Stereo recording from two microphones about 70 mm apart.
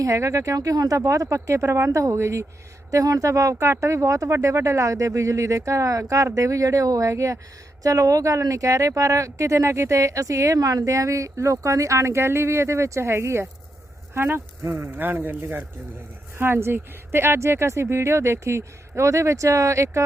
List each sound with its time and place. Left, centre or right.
0.0 s speech: right